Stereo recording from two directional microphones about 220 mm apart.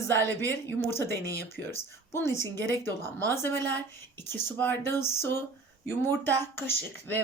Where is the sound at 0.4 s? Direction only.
10° left (ahead or behind).